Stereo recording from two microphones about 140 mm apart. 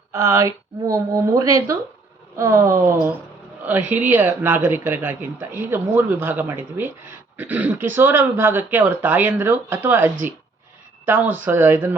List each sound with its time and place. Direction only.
0.1 s speech: 20° right (ahead or behind)